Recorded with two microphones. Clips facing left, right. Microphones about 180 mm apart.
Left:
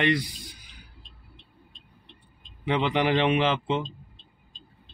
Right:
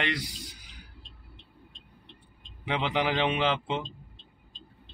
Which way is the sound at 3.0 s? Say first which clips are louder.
Left 5 dB; 50° left (ahead or behind).